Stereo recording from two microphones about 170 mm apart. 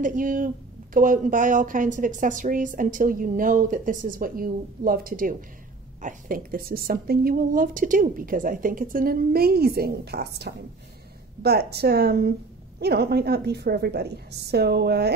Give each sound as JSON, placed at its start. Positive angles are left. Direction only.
{"t": 0.0, "sound": "a woman's voice", "side_deg": -50}